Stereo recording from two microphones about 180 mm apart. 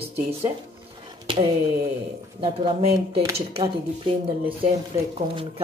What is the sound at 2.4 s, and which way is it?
Speech, 30° right (ahead or behind).